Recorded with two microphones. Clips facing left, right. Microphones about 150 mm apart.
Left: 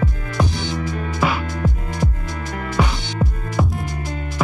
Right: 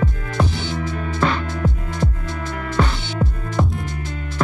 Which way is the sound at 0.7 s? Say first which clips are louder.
Even; 40° left (ahead or behind).